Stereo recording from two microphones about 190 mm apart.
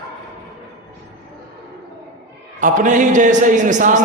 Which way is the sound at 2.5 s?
40° right (ahead or behind).